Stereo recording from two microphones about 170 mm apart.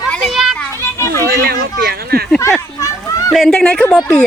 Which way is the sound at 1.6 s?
65° right (ahead or behind).